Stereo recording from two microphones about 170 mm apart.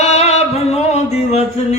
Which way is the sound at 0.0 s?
40° left (ahead or behind).